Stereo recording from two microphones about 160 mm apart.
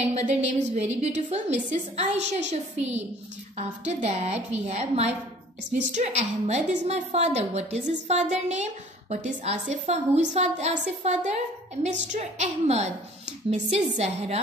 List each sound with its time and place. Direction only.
0.1 s a woman's voice: 45° right (ahead or behind)